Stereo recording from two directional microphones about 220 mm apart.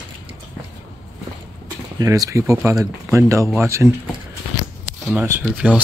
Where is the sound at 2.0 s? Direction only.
15° right (ahead or behind).